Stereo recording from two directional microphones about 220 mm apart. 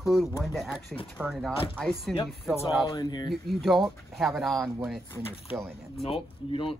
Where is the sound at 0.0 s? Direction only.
Centre (ahead or behind).